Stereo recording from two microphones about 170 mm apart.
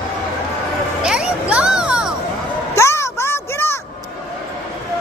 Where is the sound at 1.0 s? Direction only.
5° right (ahead or behind).